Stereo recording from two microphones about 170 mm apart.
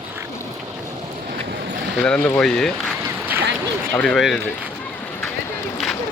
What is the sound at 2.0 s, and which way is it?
Speech, 5° left (ahead or behind).